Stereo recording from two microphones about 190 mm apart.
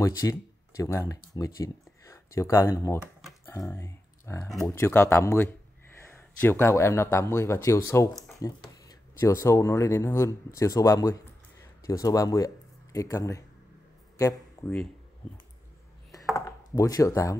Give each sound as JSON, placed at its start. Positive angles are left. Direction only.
{"t": 0.0, "sound": "speech", "side_deg": 15}
{"t": 16.3, "sound": "speech", "side_deg": 15}